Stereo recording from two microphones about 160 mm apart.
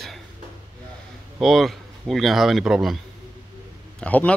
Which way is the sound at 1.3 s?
Centre (ahead or behind).